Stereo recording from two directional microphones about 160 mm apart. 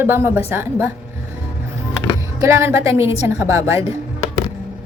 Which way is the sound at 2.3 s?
20° right (ahead or behind).